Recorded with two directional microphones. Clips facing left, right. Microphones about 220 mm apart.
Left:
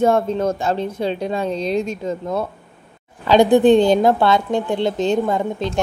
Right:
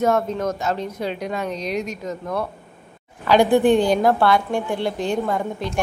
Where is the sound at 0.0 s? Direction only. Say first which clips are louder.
Left 3 dB; 30° left (ahead or behind).